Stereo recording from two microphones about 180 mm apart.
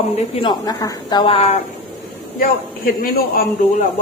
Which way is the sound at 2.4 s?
55° left (ahead or behind).